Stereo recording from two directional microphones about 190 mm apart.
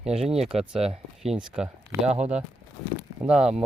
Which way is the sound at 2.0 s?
35° right (ahead or behind).